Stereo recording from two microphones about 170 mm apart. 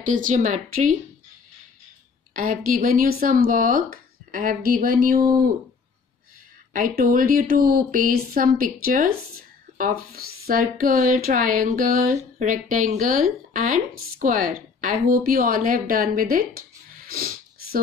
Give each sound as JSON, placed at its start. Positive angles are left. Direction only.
{"t": 0.0, "sound": "speech", "side_deg": -50}
{"t": 2.3, "sound": "speech", "side_deg": -55}
{"t": 6.7, "sound": "speech", "side_deg": -55}
{"t": 10.8, "sound": "speech", "side_deg": -50}
{"t": 17.1, "sound": "sniff", "side_deg": -55}